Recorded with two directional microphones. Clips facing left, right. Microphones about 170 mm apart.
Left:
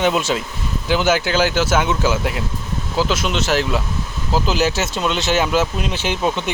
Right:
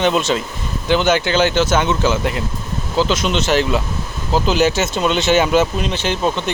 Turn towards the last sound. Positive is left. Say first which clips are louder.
# right 2 dB
turn(degrees=10)  # may be behind; listen again after turning